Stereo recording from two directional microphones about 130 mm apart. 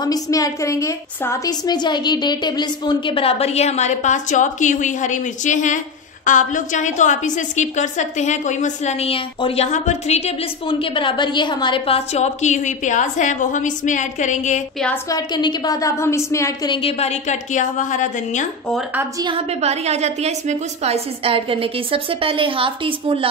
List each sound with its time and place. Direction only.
0.0 s a woman's voice: 30° left (ahead or behind)
1.7 s a woman's voice: 35° left (ahead or behind)
9.7 s a woman's voice: 60° left (ahead or behind)
10.7 s a woman's voice: 40° left (ahead or behind); by 14.6 s 70° left (ahead or behind)
15.0 s a woman's voice: 30° left (ahead or behind)
16.7 s a woman's voice: 50° left (ahead or behind); by 18.5 s 70° left (ahead or behind)
19.3 s a woman's voice: 55° right (ahead or behind)